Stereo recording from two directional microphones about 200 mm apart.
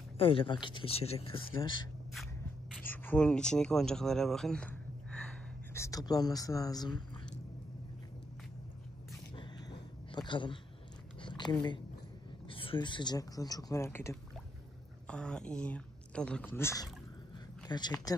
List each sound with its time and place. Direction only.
0.2 s speech: 25° left (ahead or behind)
2.9 s speech: 5° left (ahead or behind)
5.8 s speech: 15° left (ahead or behind)
9.3 s a sound: 25° left (ahead or behind)
11.2 s a woman's voice: 20° left (ahead or behind)